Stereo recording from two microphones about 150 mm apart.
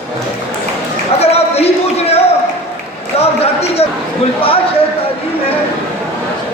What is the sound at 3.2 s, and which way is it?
Run, 40° left (ahead or behind).